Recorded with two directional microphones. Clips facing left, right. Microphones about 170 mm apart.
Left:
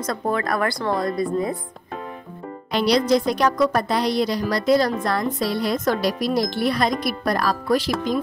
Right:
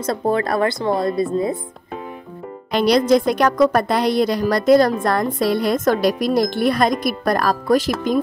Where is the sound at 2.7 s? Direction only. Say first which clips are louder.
Right 4 dB; 50° right (ahead or behind).